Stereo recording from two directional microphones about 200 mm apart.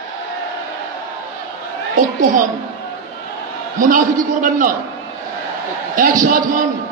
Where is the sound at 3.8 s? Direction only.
40° right (ahead or behind).